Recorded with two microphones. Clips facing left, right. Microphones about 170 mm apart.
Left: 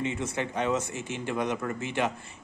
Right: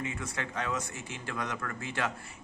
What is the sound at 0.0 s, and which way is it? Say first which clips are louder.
Speech: left 6 dB; 25° left (ahead or behind).